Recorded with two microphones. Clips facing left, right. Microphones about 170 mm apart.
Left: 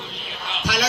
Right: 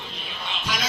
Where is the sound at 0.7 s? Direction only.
90° left.